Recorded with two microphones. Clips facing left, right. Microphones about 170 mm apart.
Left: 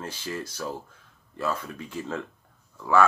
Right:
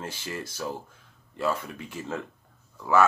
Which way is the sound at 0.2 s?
25° right (ahead or behind).